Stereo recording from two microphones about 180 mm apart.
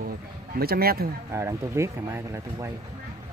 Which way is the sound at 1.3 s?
15° right (ahead or behind).